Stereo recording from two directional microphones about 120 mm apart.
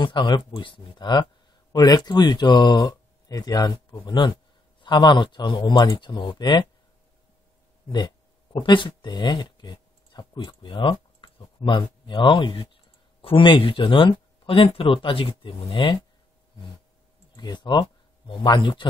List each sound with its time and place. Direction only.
0.0 s speech: 40° left (ahead or behind)
8.6 s speech: 40° left (ahead or behind)
17.4 s speech: 40° left (ahead or behind)